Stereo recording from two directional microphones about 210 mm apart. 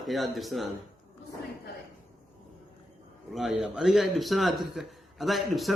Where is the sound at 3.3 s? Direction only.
Centre (ahead or behind).